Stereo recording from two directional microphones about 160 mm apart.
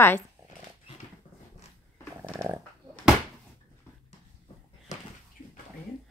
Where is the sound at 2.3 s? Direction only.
15° right (ahead or behind).